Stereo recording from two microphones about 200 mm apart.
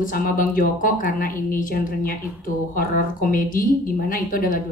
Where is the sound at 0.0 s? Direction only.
45° left (ahead or behind).